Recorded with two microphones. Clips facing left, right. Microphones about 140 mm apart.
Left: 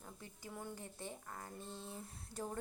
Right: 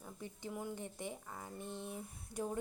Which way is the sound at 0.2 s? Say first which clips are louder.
Right 6 dB; 15° right (ahead or behind).